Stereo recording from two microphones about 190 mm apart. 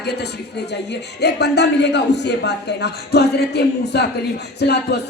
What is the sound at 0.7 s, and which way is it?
Speech, 60° left (ahead or behind).